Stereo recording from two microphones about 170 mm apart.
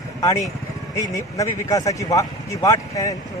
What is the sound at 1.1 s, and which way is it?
Speech, 20° left (ahead or behind).